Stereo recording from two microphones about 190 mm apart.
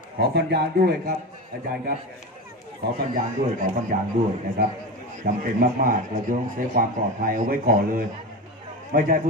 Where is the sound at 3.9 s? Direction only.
45° right (ahead or behind).